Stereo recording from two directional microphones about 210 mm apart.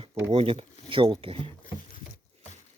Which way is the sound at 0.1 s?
15° right (ahead or behind).